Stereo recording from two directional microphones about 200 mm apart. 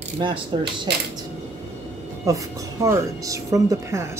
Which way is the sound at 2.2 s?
15° right (ahead or behind).